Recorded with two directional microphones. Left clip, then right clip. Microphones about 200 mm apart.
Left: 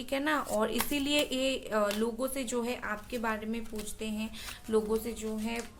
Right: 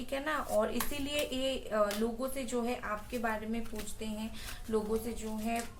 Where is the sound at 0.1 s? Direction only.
45° left (ahead or behind).